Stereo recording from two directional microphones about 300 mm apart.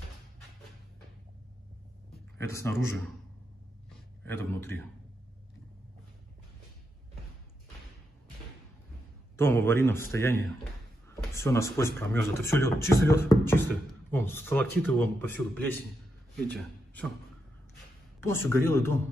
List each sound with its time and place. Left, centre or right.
2.3 s speech: centre
4.3 s speech: centre
9.4 s a man's voice: centre
18.2 s speech: centre